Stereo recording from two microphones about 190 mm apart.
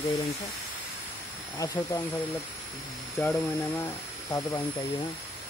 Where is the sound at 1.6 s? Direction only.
20° left (ahead or behind).